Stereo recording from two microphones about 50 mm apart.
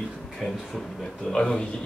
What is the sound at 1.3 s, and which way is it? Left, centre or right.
Speech, centre.